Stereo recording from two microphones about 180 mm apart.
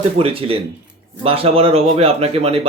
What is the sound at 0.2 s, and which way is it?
A man's voice, 30° right (ahead or behind).